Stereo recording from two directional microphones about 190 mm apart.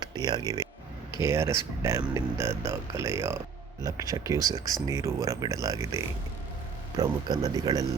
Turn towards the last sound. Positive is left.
turn(degrees=-20)  # may be behind; listen again after turning